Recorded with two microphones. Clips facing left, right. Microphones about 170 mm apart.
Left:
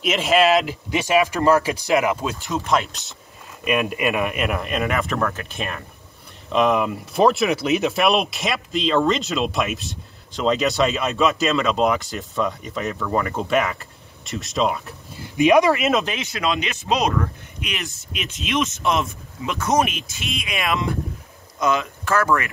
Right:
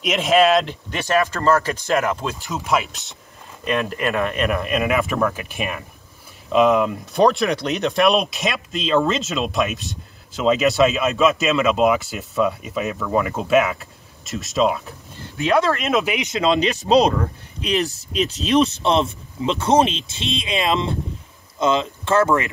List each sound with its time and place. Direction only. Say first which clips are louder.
0.0 s speech: right 1 dB; centre (ahead or behind)
3.6 s speech: left 1 dB; 15° left (ahead or behind)
15.2 s speech: left 4 dB; 15° left (ahead or behind)
16.0 s speech: right 4 dB; 15° right (ahead or behind)
16.5 s speech: right 7 dB; 35° right (ahead or behind)